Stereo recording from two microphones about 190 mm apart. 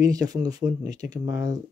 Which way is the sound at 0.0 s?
20° right (ahead or behind).